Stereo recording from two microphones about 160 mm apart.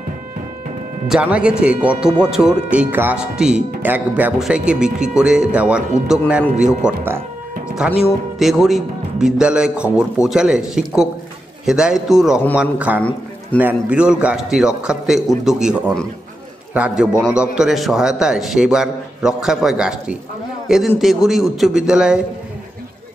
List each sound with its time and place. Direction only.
1.0 s speech: 5° right (ahead or behind)
7.6 s music: 5° right (ahead or behind)
8.4 s a man's voice: centre (ahead or behind)